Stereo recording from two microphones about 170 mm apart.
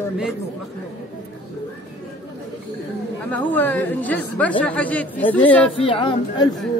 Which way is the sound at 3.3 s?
10° left (ahead or behind).